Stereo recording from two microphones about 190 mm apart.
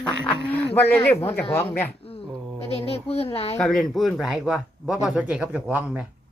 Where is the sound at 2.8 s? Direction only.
30° left (ahead or behind).